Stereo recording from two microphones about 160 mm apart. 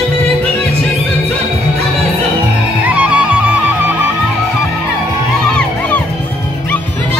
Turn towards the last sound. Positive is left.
turn(degrees=10)  # may be behind; listen again after turning